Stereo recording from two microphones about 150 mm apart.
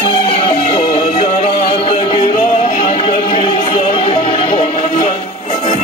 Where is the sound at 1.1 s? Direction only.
50° left (ahead or behind).